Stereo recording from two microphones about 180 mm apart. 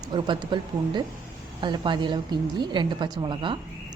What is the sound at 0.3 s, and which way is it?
A woman's voice, 25° right (ahead or behind).